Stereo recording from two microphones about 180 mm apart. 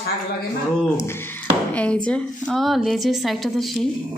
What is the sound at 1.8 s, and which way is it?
A woman's voice, 5° left (ahead or behind).